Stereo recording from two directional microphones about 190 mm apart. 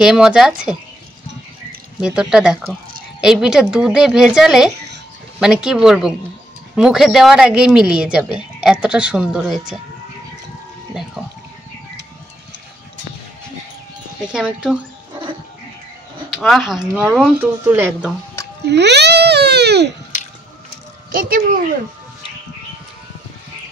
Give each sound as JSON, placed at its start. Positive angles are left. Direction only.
{"t": 0.0, "sound": "speech", "side_deg": -5}
{"t": 2.0, "sound": "speech", "side_deg": -5}
{"t": 11.2, "sound": "speech", "side_deg": -5}
{"t": 14.2, "sound": "speech", "side_deg": -5}
{"t": 16.3, "sound": "speech", "side_deg": 0}
{"t": 18.7, "sound": "baby cry", "side_deg": -65}
{"t": 21.1, "sound": "speech", "side_deg": -45}